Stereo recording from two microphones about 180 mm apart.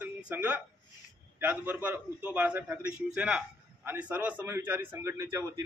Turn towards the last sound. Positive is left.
turn(degrees=-15)  # may be behind; listen again after turning